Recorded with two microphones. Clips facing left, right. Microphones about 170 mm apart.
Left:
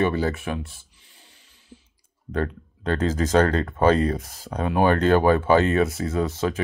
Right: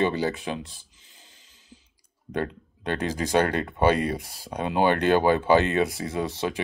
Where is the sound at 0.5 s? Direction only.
25° right (ahead or behind).